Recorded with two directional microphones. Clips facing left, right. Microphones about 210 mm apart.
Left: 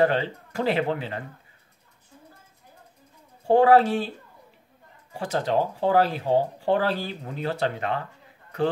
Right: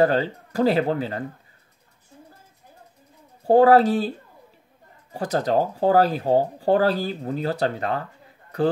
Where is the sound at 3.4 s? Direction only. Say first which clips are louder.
Right 3 dB; 35° right (ahead or behind).